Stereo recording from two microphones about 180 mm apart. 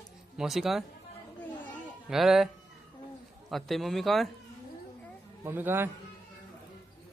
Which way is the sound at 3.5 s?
Centre (ahead or behind).